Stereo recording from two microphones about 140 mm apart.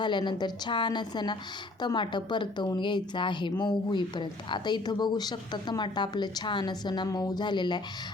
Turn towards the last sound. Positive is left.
turn(degrees=35)  # may be behind; listen again after turning